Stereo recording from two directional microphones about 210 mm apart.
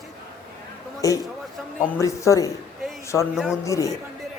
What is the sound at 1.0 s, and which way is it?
A man's voice, 15° left (ahead or behind).